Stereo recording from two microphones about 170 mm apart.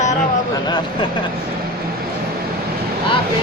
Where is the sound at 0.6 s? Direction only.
25° left (ahead or behind).